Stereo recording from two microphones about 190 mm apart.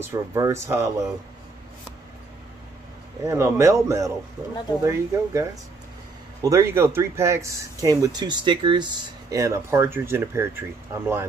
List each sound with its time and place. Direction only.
0.0 s speech: 15° right (ahead or behind)
3.3 s speech: 15° right (ahead or behind)